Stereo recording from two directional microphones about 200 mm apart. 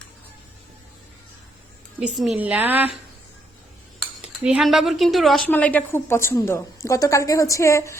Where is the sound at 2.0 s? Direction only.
Centre (ahead or behind).